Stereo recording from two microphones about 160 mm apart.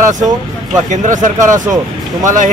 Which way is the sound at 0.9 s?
55° right (ahead or behind).